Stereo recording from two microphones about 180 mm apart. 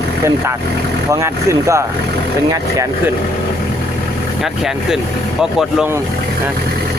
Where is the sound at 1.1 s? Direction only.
15° right (ahead or behind).